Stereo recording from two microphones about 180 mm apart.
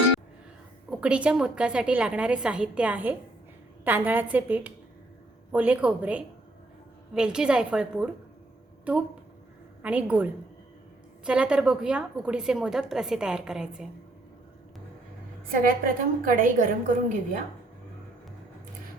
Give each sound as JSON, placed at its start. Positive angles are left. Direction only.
{"t": 0.9, "sound": "a woman's voice", "side_deg": -5}
{"t": 11.3, "sound": "a woman's voice", "side_deg": -5}
{"t": 15.6, "sound": "a woman's voice", "side_deg": -50}